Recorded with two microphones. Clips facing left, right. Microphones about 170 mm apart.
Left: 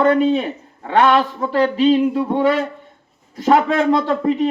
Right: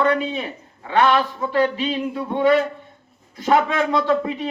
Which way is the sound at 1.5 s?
40° left (ahead or behind).